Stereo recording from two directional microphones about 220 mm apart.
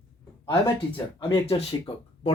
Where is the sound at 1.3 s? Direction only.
25° left (ahead or behind).